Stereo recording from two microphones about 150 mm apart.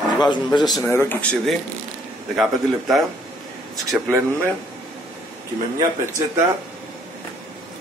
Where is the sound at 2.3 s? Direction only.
Centre (ahead or behind).